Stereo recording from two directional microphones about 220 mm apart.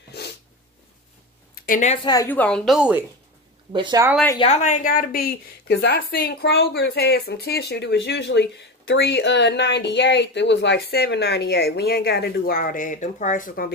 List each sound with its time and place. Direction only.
0.1 s snort: 50° left (ahead or behind)
1.5 s a sound: 35° left (ahead or behind)
2.0 s a woman's voice: 10° left (ahead or behind); by 3.1 s 5° right (ahead or behind)
3.7 s speech: 20° right (ahead or behind)
4.4 s a woman's voice: 30° left (ahead or behind)